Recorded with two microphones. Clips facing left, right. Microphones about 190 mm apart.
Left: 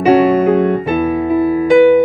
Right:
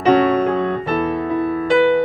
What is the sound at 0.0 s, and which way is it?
Music, 10° left (ahead or behind).